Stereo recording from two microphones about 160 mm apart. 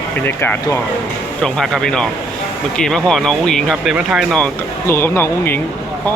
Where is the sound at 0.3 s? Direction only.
15° left (ahead or behind).